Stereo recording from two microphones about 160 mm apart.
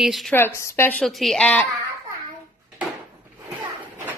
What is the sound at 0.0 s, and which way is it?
Speech, centre (ahead or behind).